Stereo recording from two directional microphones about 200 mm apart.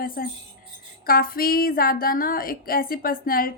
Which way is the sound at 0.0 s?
45° left (ahead or behind).